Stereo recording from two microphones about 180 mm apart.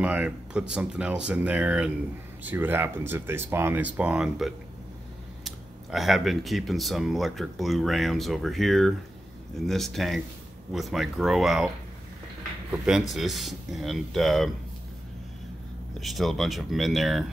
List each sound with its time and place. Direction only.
0.0 s speech: 5° right (ahead or behind)
13.1 s speech: centre (ahead or behind)
16.0 s speech: centre (ahead or behind)